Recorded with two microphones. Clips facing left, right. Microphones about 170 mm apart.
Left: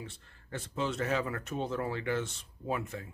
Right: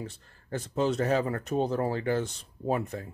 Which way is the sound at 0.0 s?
40° right (ahead or behind).